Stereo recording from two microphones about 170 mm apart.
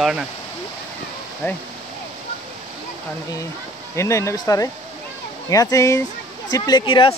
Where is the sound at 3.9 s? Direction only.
15° left (ahead or behind).